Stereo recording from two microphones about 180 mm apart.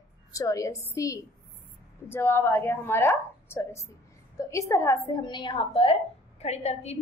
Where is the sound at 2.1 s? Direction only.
15° left (ahead or behind).